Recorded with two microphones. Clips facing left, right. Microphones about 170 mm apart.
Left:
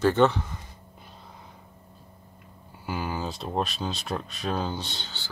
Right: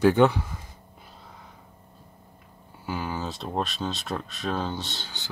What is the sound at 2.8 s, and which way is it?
Speech, centre (ahead or behind).